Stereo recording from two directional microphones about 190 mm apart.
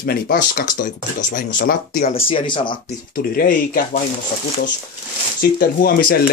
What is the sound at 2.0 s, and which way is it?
Speech, 30° left (ahead or behind).